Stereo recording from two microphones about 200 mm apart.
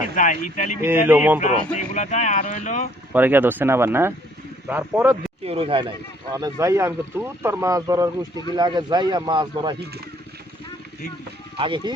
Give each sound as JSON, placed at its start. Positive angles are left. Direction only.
{"t": 0.0, "sound": "speech", "side_deg": 40}
{"t": 0.8, "sound": "speech", "side_deg": -10}
{"t": 1.4, "sound": "speech", "side_deg": 35}
{"t": 3.1, "sound": "speech", "side_deg": -10}
{"t": 5.5, "sound": "speech", "side_deg": -30}
{"t": 6.3, "sound": "speech", "side_deg": -15}
{"t": 11.5, "sound": "speech", "side_deg": -25}